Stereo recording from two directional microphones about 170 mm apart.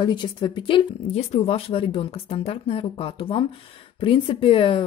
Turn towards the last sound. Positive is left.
turn(degrees=30)  # may be behind; listen again after turning